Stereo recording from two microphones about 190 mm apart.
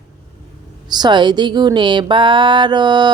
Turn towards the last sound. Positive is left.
turn(degrees=-25)  # may be behind; listen again after turning